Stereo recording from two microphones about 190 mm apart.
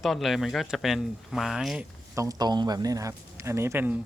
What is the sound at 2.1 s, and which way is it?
A man's voice, 15° right (ahead or behind).